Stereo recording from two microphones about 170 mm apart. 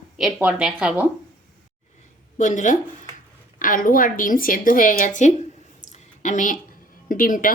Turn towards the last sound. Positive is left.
turn(degrees=55)  # may be behind; listen again after turning